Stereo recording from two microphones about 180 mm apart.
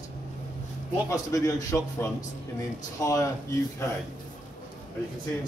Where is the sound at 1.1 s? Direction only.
20° left (ahead or behind).